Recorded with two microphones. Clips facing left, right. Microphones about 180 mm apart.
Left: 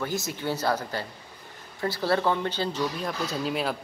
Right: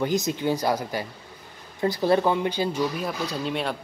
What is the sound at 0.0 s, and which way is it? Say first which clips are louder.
Speech: right 6 dB; 20° right (ahead or behind).